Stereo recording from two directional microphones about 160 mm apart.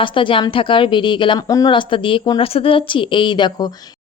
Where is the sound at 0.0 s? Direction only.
30° left (ahead or behind).